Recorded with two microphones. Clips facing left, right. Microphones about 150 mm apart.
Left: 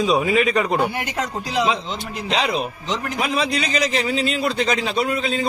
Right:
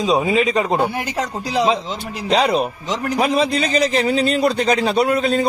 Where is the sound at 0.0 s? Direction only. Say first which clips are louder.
Right 1 dB; 25° right (ahead or behind).